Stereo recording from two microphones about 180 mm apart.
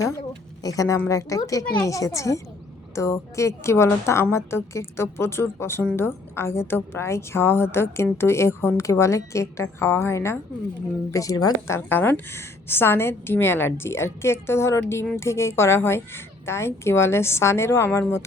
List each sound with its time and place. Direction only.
0.2 s a woman's voice: 20° left (ahead or behind)